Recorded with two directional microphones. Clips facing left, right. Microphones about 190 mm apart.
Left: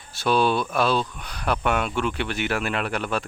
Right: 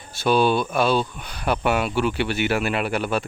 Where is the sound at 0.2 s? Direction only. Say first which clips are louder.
Right 2 dB; centre (ahead or behind).